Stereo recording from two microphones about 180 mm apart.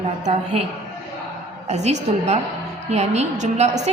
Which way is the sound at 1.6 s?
40° right (ahead or behind).